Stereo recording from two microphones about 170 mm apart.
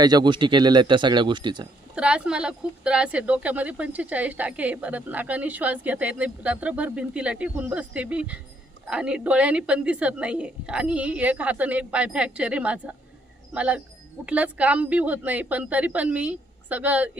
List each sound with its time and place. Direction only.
0.0 s speech: 25° right (ahead or behind)
2.0 s speech: 5° right (ahead or behind)